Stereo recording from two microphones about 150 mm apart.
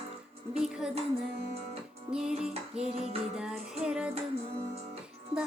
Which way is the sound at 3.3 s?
5° right (ahead or behind).